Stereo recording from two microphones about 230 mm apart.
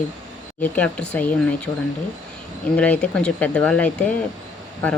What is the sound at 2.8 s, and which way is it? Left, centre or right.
Speech, centre.